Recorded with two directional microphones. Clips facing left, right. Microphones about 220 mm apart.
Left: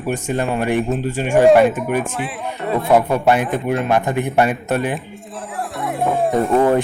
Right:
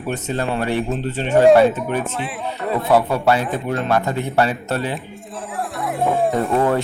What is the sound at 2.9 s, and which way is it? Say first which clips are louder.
Speech: left 2 dB; 15° left (ahead or behind).